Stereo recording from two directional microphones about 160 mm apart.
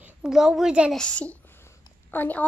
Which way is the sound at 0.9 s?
5° left (ahead or behind).